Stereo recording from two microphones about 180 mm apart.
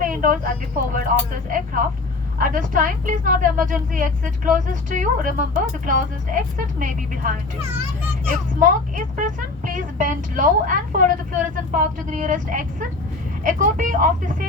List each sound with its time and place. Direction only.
0.0 s a woman's voice: 50° right (ahead or behind)
8.5 s a woman's voice: 45° right (ahead or behind)